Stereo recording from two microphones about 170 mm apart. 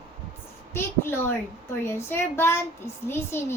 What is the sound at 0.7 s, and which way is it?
A woman's voice, 15° left (ahead or behind).